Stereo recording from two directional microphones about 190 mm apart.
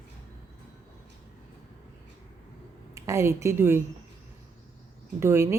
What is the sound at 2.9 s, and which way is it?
Speech, 15° right (ahead or behind).